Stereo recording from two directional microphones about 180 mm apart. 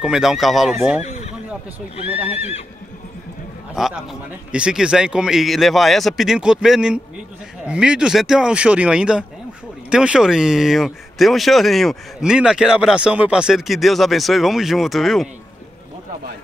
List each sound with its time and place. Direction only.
0.0 s speech: 5° right (ahead or behind)
1.0 s neigh: 40° left (ahead or behind)
2.0 s speech: 10° right (ahead or behind)
2.3 s speech: 35° left (ahead or behind)
3.7 s speech: centre (ahead or behind)